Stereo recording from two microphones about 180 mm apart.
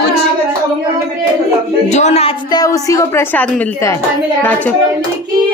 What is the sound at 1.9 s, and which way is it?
Speech, 40° left (ahead or behind).